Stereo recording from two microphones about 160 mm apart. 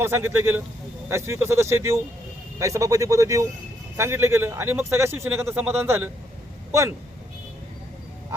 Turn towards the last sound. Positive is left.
turn(degrees=-15)  # may be behind; listen again after turning